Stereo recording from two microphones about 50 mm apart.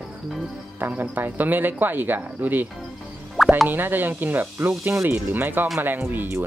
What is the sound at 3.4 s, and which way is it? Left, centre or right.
Plop, centre.